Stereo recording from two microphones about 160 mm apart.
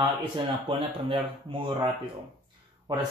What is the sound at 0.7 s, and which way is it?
Speech, 35° right (ahead or behind).